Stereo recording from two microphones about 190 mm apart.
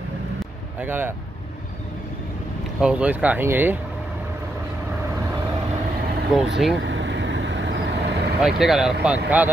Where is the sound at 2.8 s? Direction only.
5° right (ahead or behind).